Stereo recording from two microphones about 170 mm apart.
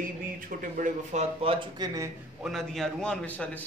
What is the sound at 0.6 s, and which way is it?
Speech, 50° right (ahead or behind).